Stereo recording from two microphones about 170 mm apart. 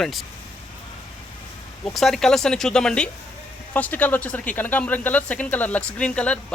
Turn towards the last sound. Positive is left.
turn(degrees=5)  # may be behind; listen again after turning